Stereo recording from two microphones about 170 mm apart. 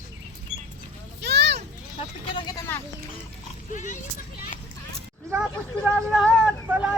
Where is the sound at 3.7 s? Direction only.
45° left (ahead or behind).